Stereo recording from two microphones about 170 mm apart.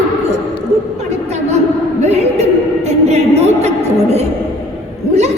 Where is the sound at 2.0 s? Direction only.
40° right (ahead or behind).